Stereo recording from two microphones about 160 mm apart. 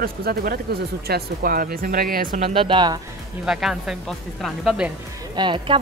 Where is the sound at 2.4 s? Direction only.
35° right (ahead or behind).